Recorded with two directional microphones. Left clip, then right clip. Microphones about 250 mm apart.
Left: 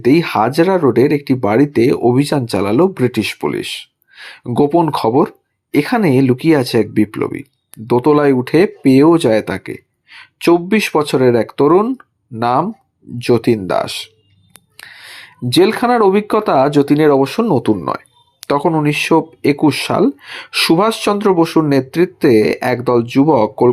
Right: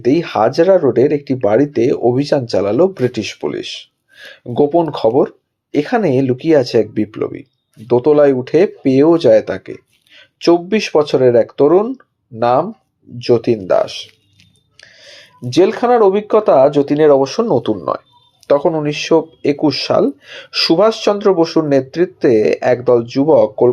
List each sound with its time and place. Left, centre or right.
0.0 s speech: left
15.5 s speech: left